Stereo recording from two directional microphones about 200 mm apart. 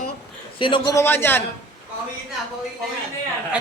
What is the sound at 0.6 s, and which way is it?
Speech, 25° left (ahead or behind).